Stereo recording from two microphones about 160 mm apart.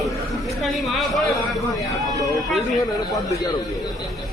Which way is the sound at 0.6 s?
Centre (ahead or behind).